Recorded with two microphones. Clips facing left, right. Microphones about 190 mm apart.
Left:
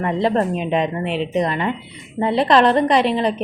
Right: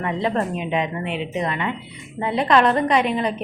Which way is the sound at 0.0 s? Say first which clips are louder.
Left 4 dB; 35° left (ahead or behind).